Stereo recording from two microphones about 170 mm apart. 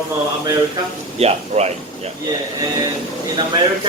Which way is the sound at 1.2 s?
40° right (ahead or behind).